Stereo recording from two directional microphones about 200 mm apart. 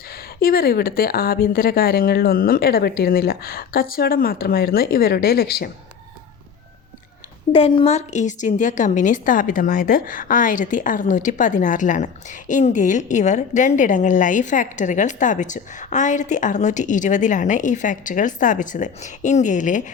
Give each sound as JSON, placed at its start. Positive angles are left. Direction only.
{"t": 0.3, "sound": "speech", "side_deg": 50}
{"t": 7.5, "sound": "a woman's voice", "side_deg": 30}